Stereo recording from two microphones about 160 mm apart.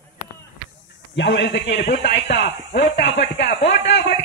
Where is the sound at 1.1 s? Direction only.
90° left.